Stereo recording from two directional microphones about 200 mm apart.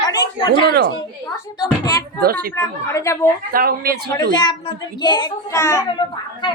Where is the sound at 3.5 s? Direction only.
50° right (ahead or behind).